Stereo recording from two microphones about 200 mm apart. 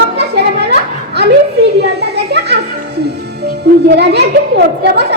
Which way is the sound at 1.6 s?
55° right (ahead or behind).